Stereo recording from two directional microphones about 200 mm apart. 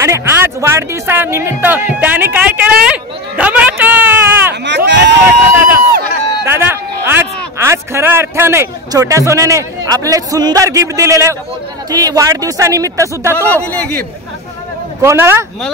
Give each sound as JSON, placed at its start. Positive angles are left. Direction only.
{"t": 0.0, "sound": "speech", "side_deg": -15}
{"t": 4.6, "sound": "speech", "side_deg": -60}
{"t": 5.5, "sound": "speech", "side_deg": -10}
{"t": 13.7, "sound": "a man's voice", "side_deg": 10}
{"t": 15.0, "sound": "speech", "side_deg": -15}